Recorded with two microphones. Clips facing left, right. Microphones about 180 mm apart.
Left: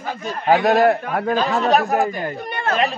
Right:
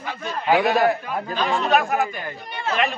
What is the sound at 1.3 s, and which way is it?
Speech, 40° left (ahead or behind).